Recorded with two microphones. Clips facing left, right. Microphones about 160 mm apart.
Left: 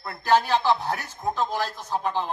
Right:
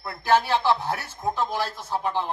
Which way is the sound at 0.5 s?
15° left (ahead or behind).